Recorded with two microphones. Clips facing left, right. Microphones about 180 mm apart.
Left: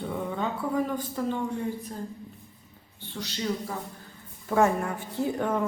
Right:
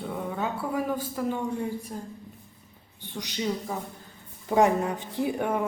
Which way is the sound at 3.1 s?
15° right (ahead or behind).